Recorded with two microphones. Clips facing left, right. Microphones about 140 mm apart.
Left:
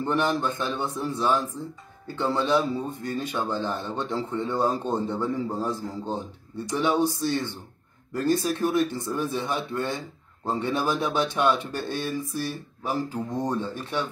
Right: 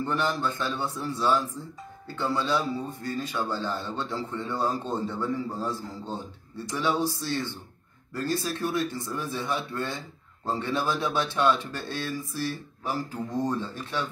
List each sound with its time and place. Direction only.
0.0 s speech: 20° left (ahead or behind)